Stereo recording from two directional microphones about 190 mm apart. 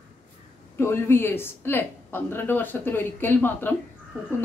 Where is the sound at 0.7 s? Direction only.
15° left (ahead or behind).